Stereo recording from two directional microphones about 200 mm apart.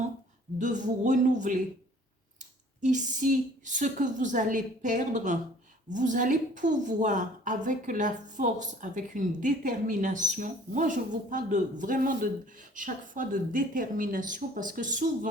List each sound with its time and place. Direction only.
0.6 s a woman's voice: 40° right (ahead or behind)
2.8 s a woman's voice: 40° right (ahead or behind)